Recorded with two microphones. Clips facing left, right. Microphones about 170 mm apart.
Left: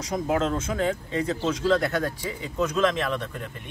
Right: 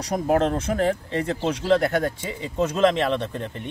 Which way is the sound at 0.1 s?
40° right (ahead or behind).